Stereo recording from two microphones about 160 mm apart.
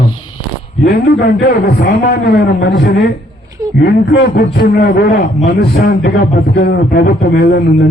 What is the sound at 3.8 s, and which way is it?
Speech, 85° left.